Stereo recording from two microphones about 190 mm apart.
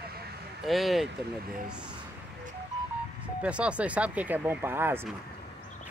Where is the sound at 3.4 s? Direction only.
5° right (ahead or behind).